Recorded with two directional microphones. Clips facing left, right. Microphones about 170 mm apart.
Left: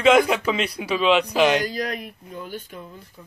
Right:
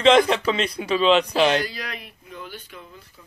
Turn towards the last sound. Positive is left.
turn(degrees=45)  # may be behind; listen again after turning